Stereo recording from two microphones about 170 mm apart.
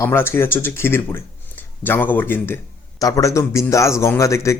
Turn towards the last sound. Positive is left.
turn(degrees=15)  # may be behind; listen again after turning